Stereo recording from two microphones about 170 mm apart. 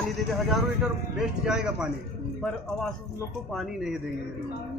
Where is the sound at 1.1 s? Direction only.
5° right (ahead or behind).